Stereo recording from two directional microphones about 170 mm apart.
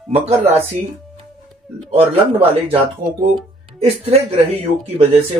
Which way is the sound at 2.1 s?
35° right (ahead or behind).